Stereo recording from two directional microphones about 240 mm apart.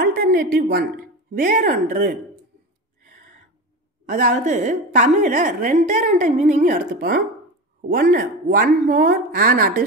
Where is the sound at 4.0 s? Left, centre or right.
Right.